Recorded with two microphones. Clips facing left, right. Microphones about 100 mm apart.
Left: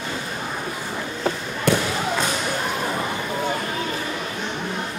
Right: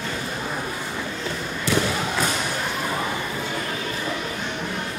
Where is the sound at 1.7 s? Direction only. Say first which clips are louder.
Left 3 dB; 55° left (ahead or behind).